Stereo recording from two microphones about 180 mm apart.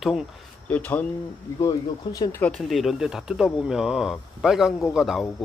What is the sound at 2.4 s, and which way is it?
Speech, 5° left (ahead or behind).